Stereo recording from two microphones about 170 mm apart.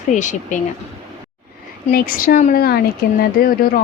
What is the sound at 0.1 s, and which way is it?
Speech, 45° left (ahead or behind).